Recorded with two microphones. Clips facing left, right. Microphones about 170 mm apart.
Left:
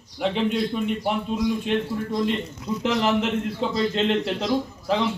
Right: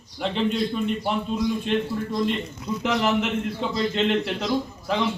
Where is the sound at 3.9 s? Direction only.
35° left (ahead or behind).